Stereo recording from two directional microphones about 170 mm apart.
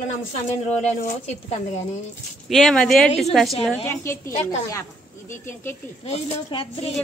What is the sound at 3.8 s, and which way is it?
Speech, 15° left (ahead or behind).